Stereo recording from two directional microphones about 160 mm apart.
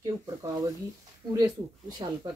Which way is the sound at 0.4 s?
20° right (ahead or behind).